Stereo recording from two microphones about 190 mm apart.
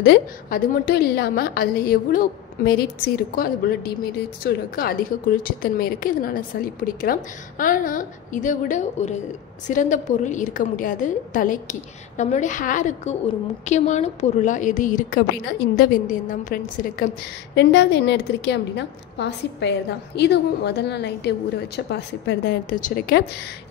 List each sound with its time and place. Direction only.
0.0 s a woman's voice: 65° left (ahead or behind); by 17.2 s 50° left (ahead or behind)
17.6 s a woman's voice: 65° left (ahead or behind)
22.8 s a woman's voice: 45° left (ahead or behind)